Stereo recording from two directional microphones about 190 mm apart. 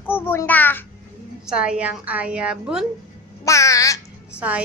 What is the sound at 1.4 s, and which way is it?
Speech, 5° right (ahead or behind).